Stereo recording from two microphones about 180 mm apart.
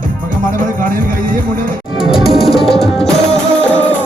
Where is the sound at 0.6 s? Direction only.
50° right (ahead or behind).